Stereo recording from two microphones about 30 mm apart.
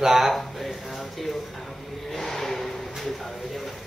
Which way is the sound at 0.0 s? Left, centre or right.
Centre.